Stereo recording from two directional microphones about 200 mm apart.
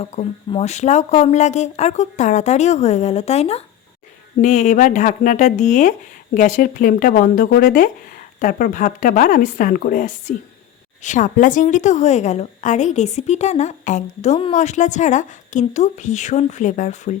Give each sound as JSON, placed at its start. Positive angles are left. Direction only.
{"t": 0.0, "sound": "a woman's voice", "side_deg": 30}